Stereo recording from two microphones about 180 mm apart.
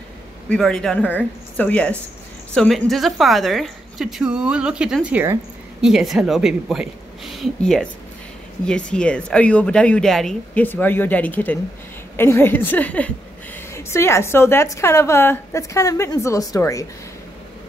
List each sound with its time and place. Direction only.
0.5 s a woman's voice: 5° left (ahead or behind)